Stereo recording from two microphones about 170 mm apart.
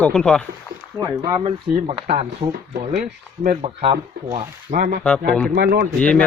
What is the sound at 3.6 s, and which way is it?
Speech, 35° right (ahead or behind).